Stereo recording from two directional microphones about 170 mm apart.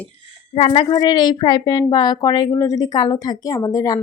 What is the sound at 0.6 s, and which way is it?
A woman's voice, 35° left (ahead or behind).